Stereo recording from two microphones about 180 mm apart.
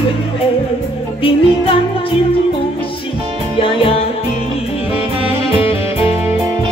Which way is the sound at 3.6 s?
30° left (ahead or behind).